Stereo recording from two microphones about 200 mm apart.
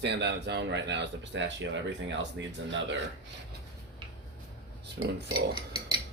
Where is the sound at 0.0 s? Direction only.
60° right (ahead or behind).